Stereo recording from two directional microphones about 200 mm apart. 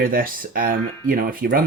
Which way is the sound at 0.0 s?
45° right (ahead or behind).